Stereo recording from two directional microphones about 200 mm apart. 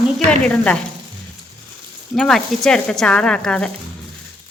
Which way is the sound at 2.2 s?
Centre (ahead or behind).